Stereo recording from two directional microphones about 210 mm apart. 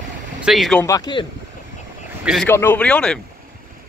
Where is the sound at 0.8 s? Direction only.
20° left (ahead or behind).